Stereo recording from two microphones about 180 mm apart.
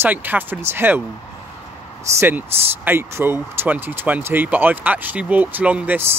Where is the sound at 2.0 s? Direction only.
15° right (ahead or behind).